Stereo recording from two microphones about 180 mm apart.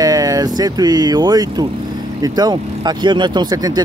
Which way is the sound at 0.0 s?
20° right (ahead or behind).